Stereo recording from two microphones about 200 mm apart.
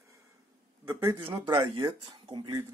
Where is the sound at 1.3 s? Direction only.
25° right (ahead or behind).